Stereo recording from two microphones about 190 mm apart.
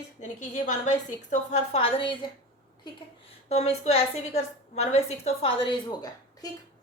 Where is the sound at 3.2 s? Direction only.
35° left (ahead or behind).